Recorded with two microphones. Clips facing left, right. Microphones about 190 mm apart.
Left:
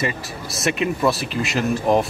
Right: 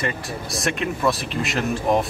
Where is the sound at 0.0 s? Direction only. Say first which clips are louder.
Left 1 dB; centre (ahead or behind).